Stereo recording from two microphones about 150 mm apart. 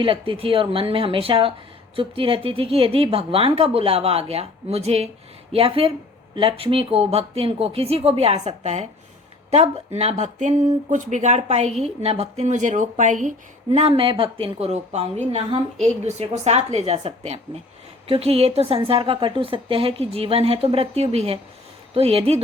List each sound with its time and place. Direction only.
0.0 s a woman's voice: 35° right (ahead or behind)